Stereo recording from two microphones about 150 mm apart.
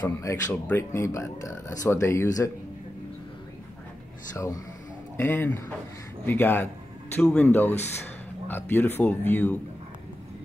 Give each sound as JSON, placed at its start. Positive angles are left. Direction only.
{"t": 0.0, "sound": "speech", "side_deg": 20}
{"t": 5.1, "sound": "speech", "side_deg": 15}